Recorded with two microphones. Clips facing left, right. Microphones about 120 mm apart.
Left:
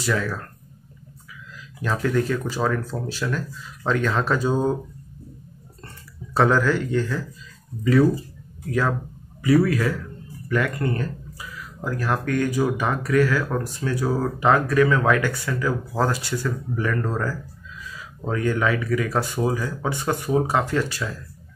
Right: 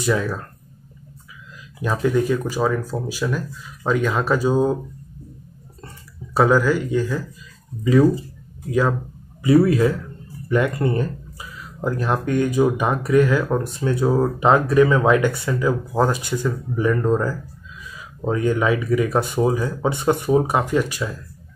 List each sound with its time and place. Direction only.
0.0 s speech: 15° right (ahead or behind)
1.8 s speech: 15° right (ahead or behind)
6.3 s speech: 10° right (ahead or behind)